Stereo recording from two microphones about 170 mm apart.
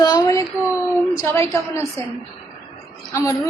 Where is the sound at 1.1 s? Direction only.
15° left (ahead or behind).